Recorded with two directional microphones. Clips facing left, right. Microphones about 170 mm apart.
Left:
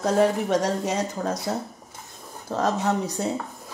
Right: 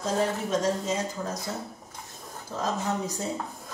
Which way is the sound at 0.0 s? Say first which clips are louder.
Left 6 dB; 70° left (ahead or behind).